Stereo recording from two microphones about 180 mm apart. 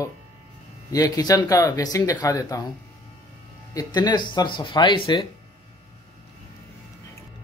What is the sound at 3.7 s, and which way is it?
Speech, 25° left (ahead or behind).